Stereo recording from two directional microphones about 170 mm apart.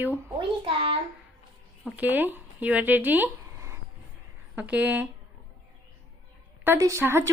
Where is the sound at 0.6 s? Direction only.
30° right (ahead or behind).